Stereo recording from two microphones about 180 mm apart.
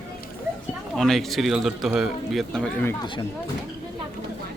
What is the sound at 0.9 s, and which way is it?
Speech, centre (ahead or behind).